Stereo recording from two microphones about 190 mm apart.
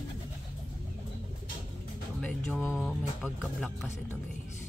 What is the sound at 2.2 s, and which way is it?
Music, 5° left (ahead or behind).